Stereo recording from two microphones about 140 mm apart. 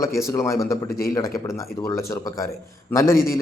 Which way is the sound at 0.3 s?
20° left (ahead or behind).